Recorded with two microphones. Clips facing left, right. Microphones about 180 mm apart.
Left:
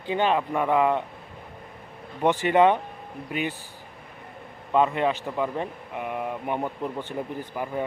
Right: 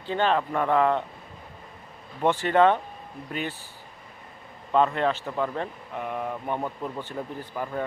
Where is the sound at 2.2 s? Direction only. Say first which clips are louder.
Left 1 dB; 15° left (ahead or behind).